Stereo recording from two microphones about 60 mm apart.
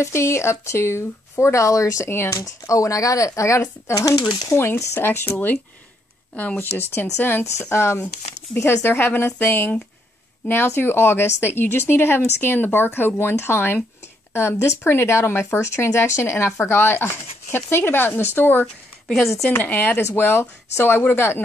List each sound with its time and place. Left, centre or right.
0.0 s speech: left
2.0 s speech: left
2.3 s speech: left
3.9 s speech: left
4.5 s speech: left
7.5 s speech: left